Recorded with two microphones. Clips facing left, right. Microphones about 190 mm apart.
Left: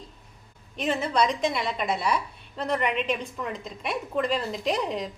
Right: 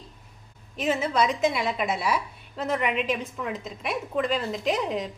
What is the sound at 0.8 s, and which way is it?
A woman's voice, 5° right (ahead or behind).